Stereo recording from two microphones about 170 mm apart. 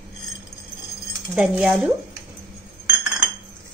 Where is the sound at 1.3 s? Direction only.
5° right (ahead or behind).